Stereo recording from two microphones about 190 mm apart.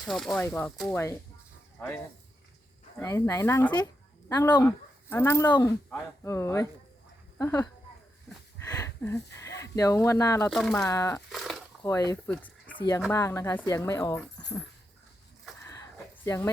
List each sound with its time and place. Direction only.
0.0 s speech: centre (ahead or behind)
3.0 s speech: 15° left (ahead or behind)
10.5 s speech: centre (ahead or behind)
10.8 s speech: 15° left (ahead or behind)
11.3 s a sound: centre (ahead or behind)
11.9 s speech: 15° left (ahead or behind)
12.3 s a sound: 10° left (ahead or behind)
13.1 s speech: 15° left (ahead or behind)
15.6 s a sound: 15° left (ahead or behind)